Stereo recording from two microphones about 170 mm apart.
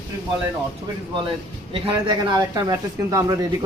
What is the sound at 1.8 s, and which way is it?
Speech, 25° right (ahead or behind).